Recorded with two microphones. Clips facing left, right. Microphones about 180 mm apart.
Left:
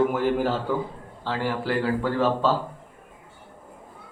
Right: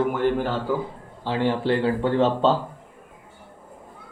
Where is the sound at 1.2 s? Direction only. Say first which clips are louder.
Right 4 dB; 20° right (ahead or behind).